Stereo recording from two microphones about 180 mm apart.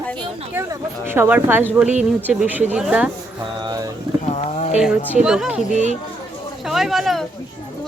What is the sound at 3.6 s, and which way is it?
Speech, 20° right (ahead or behind).